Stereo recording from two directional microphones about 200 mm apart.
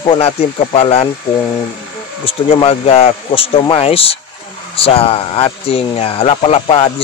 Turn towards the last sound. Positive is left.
turn(degrees=25)  # may be behind; listen again after turning